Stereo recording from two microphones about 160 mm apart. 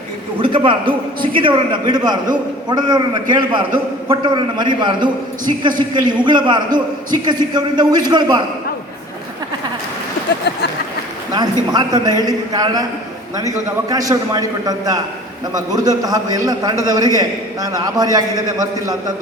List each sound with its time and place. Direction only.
0.3 s a man's voice: 35° right (ahead or behind)
11.7 s a man's voice: 25° right (ahead or behind)